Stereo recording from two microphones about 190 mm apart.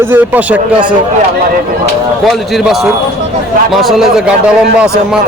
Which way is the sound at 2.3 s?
Centre (ahead or behind).